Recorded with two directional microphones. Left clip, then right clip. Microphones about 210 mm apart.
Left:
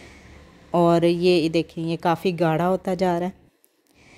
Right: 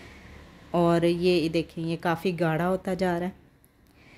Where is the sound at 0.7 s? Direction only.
20° left (ahead or behind).